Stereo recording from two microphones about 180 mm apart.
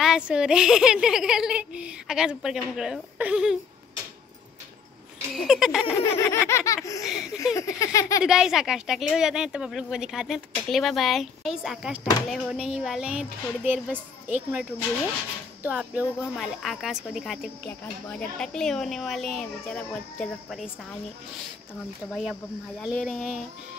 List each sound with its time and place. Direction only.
0.0 s speech: 5° right (ahead or behind)
5.3 s speech: centre (ahead or behind)
6.0 s laughter: 15° left (ahead or behind)
8.2 s speech: 5° right (ahead or behind)
20.4 s speech: centre (ahead or behind)
22.1 s speech: centre (ahead or behind)